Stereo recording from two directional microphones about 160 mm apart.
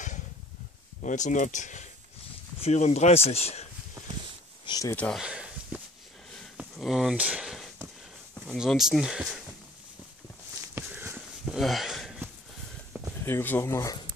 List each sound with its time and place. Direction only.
1.0 s speech: 50° left (ahead or behind)
4.6 s speech: 25° left (ahead or behind)
4.9 s speech: 10° left (ahead or behind)
5.2 s a sound: 5° right (ahead or behind)
8.5 s speech: centre (ahead or behind)
10.7 s a sound: 15° right (ahead or behind)
13.2 s speech: 15° left (ahead or behind)